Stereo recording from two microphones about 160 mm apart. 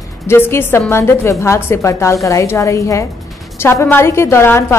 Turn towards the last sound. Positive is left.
turn(degrees=15)  # may be behind; listen again after turning